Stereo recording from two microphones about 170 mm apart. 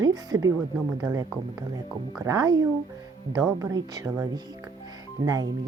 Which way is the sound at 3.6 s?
20° right (ahead or behind).